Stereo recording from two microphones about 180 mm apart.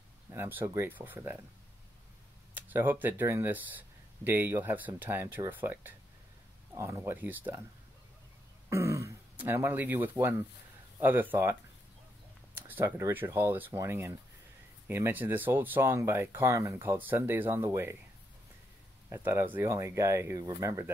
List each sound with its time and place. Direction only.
0.3 s speech: 10° right (ahead or behind)
2.5 s speech: 10° right (ahead or behind)
8.6 s speech: 15° right (ahead or behind)
12.8 s speech: 15° right (ahead or behind)
19.0 s speech: 15° right (ahead or behind)